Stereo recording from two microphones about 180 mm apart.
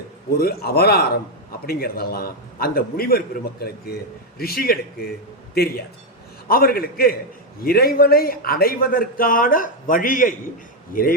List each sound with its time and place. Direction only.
0.3 s a man's voice: 60° left (ahead or behind)
6.5 s a man's voice: 55° left (ahead or behind)